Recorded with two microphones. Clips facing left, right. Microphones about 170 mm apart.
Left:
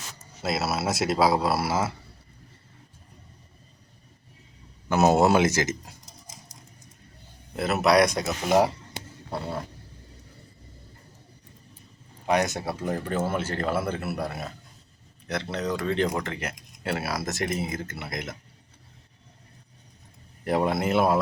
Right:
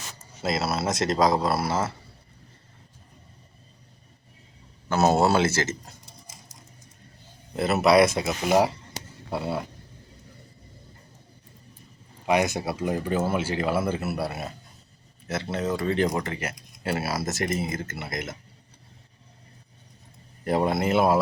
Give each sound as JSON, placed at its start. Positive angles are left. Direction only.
{"t": 0.4, "sound": "speech", "side_deg": 0}
{"t": 4.9, "sound": "speech", "side_deg": 15}
{"t": 7.5, "sound": "speech", "side_deg": 0}
{"t": 12.2, "sound": "speech", "side_deg": -10}
{"t": 20.4, "sound": "speech", "side_deg": 0}